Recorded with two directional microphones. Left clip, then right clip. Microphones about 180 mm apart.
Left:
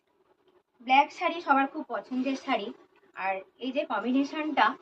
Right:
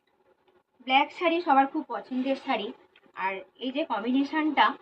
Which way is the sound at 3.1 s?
20° left (ahead or behind).